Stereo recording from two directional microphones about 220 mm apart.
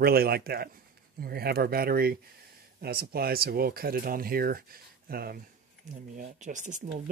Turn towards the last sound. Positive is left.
turn(degrees=-35)  # may be behind; listen again after turning